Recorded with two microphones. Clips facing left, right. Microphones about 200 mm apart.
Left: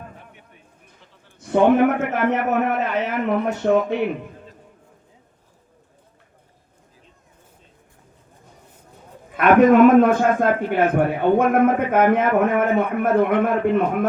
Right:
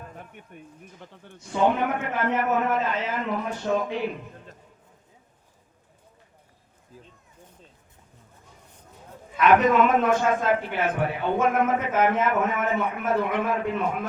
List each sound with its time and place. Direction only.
1.0 s a sound: 60° right (ahead or behind)
1.4 s a man's voice: 60° left (ahead or behind)
9.3 s a man's voice: 55° left (ahead or behind)